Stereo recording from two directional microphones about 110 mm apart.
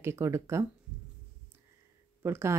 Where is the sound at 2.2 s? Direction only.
25° right (ahead or behind).